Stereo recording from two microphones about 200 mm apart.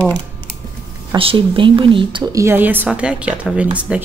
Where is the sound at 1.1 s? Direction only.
25° right (ahead or behind).